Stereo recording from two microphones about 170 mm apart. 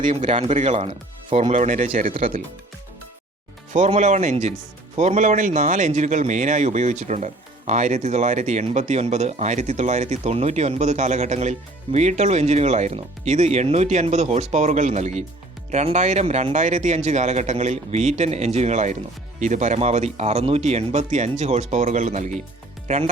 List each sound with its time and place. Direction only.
0.0 s speech: 35° right (ahead or behind)
3.7 s speech: 40° right (ahead or behind)